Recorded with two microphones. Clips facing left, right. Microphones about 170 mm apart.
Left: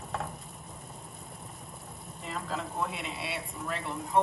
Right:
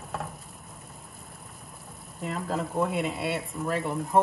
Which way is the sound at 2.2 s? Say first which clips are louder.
Right 6 dB; 45° right (ahead or behind).